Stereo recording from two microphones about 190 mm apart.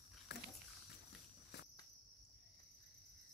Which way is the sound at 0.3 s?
60° left (ahead or behind).